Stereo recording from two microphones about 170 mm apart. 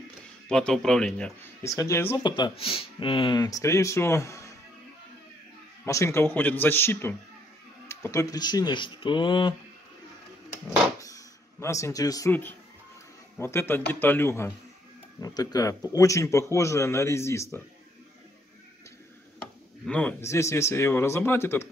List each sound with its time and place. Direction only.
0.5 s speech: 5° left (ahead or behind)
1.6 s speech: 15° left (ahead or behind)
2.2 s speech: 25° left (ahead or behind)
5.9 s speech: 15° left (ahead or behind)
11.0 s speech: 20° left (ahead or behind)
19.9 s speech: 10° left (ahead or behind)